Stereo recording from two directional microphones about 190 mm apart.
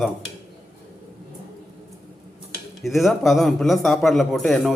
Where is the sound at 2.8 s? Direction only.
Centre (ahead or behind).